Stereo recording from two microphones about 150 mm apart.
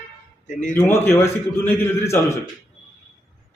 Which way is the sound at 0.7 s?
15° left (ahead or behind).